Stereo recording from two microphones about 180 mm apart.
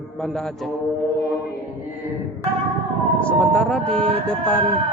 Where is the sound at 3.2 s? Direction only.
5° left (ahead or behind).